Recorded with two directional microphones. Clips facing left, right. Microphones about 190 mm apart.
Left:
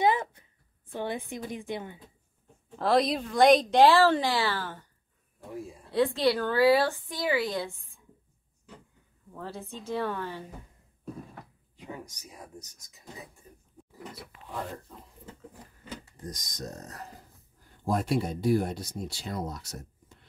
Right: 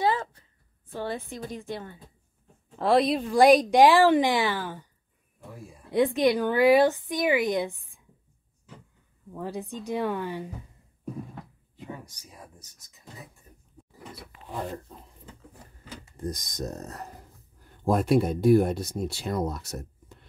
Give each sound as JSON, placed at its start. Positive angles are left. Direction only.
{"t": 0.0, "sound": "a sound", "side_deg": 15}
{"t": 0.9, "sound": "a woman's voice", "side_deg": 15}
{"t": 2.8, "sound": "speech", "side_deg": -5}
{"t": 5.9, "sound": "speech", "side_deg": -15}
{"t": 9.3, "sound": "speech", "side_deg": -15}
{"t": 16.2, "sound": "speech", "side_deg": -55}